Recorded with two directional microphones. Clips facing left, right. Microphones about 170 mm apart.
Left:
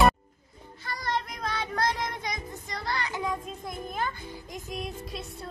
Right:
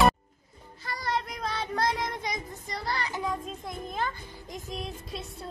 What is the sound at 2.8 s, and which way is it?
Child singing, 35° right (ahead or behind).